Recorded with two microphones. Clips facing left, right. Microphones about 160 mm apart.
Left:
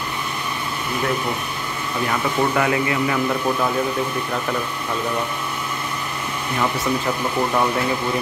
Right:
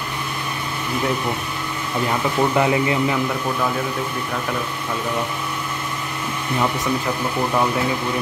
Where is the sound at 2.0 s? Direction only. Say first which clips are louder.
Right 1 dB; 20° right (ahead or behind).